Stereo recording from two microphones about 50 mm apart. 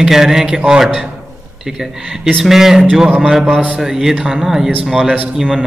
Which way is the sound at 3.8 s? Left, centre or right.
Centre.